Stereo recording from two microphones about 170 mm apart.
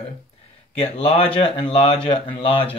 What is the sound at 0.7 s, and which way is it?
Speech, 35° left (ahead or behind).